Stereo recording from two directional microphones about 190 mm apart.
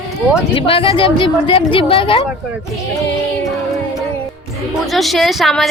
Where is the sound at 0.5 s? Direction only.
30° left (ahead or behind).